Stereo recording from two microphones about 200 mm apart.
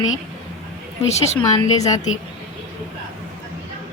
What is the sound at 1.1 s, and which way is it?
Speech, 35° left (ahead or behind).